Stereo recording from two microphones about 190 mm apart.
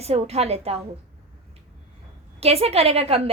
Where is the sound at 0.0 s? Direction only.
30° right (ahead or behind).